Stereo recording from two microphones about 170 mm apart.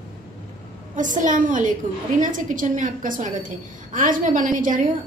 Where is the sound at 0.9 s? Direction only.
50° right (ahead or behind).